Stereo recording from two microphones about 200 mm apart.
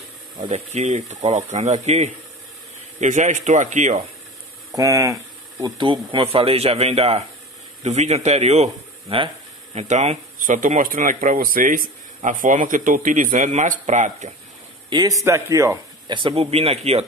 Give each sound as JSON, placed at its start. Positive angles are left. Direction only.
{"t": 0.5, "sound": "speech", "side_deg": -35}
{"t": 4.7, "sound": "speech", "side_deg": -15}
{"t": 14.9, "sound": "speech", "side_deg": -20}